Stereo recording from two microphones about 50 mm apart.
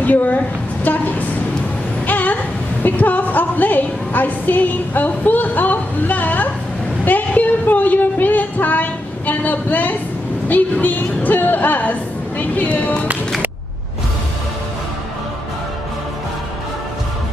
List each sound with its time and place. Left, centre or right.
0.0 s a woman's voice: left
2.0 s a sound: left
2.8 s a woman's voice: left
7.1 s music: left
10.5 s a woman's voice: left